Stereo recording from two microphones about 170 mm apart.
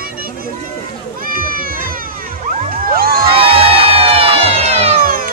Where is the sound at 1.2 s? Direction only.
55° right (ahead or behind).